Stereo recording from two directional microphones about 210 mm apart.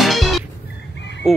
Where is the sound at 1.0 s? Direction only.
55° left (ahead or behind).